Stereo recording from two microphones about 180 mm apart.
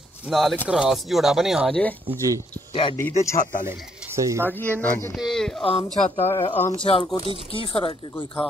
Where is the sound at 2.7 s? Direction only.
30° left (ahead or behind).